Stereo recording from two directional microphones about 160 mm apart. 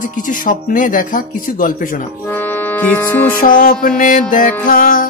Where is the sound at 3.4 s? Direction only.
55° left (ahead or behind).